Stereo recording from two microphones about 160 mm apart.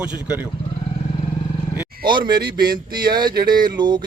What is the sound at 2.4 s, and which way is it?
Speech, 75° right (ahead or behind).